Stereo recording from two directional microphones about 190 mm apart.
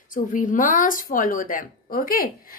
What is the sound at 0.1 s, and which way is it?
A woman's voice, 45° left (ahead or behind).